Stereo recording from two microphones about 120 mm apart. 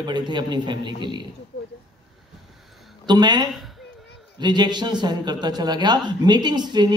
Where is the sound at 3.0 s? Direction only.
35° right (ahead or behind).